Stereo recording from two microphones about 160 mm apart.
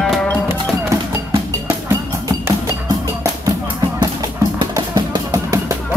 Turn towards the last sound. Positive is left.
turn(degrees=-20)  # may be behind; listen again after turning